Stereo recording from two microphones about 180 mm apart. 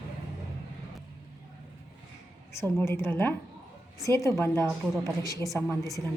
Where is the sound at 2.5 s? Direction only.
15° left (ahead or behind).